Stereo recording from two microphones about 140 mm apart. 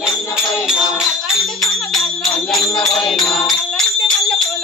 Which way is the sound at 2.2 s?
5° left (ahead or behind).